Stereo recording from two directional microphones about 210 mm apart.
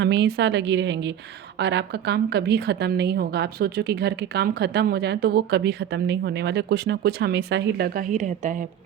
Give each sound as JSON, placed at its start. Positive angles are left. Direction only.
{"t": 0.0, "sound": "a woman's voice", "side_deg": -55}